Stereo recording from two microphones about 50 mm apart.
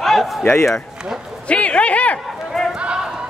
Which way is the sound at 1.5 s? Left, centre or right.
Left.